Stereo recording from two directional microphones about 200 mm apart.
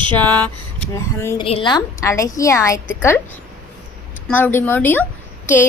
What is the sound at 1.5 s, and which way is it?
Speech, 25° left (ahead or behind).